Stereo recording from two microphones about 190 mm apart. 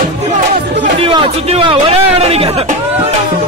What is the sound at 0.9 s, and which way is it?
Speech, 30° right (ahead or behind).